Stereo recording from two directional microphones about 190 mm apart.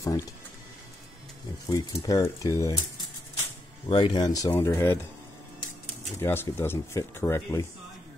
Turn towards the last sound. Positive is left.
turn(degrees=15)  # may be behind; listen again after turning